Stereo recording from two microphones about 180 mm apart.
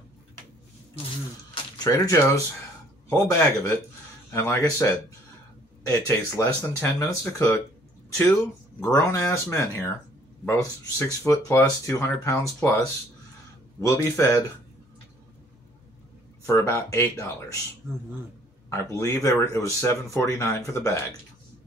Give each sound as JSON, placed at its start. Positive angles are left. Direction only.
{"t": 1.9, "sound": "speech", "side_deg": 15}
{"t": 8.7, "sound": "speech", "side_deg": 15}
{"t": 16.4, "sound": "speech", "side_deg": 15}
{"t": 18.7, "sound": "speech", "side_deg": 15}